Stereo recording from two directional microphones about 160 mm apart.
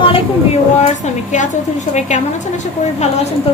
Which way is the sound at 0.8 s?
45° left (ahead or behind).